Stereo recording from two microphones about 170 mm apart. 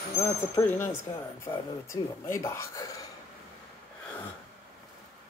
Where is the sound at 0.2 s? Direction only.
15° left (ahead or behind).